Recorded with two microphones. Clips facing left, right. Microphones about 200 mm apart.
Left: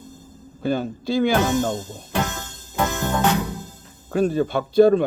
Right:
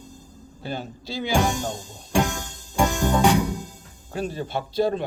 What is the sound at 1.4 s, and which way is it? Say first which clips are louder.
Music: left 4 dB; 15° right (ahead or behind).